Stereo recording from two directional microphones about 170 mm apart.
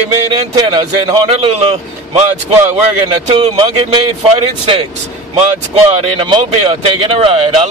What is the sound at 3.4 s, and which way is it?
Speech, 40° right (ahead or behind).